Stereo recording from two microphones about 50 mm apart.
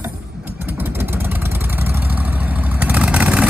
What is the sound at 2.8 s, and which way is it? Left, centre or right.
Vehicle, right.